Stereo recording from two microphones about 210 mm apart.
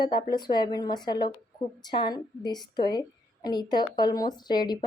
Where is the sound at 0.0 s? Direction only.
20° left (ahead or behind).